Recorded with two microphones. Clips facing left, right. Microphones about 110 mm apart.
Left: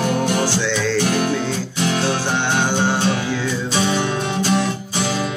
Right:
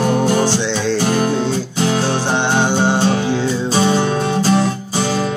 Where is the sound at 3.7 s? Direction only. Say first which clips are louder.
Right 4 dB; 35° right (ahead or behind).